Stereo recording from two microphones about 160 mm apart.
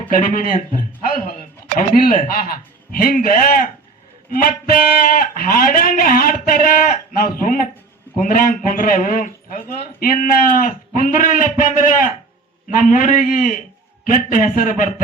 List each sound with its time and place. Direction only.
0.1 s speech: 60° left (ahead or behind)
12.6 s speech: 55° left (ahead or behind)